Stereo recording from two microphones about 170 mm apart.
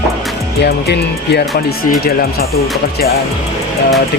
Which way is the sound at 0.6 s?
75° left (ahead or behind).